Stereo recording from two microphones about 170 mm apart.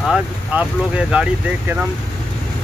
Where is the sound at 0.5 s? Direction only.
10° right (ahead or behind).